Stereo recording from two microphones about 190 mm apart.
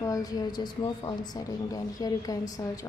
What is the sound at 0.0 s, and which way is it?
Speech, 20° left (ahead or behind).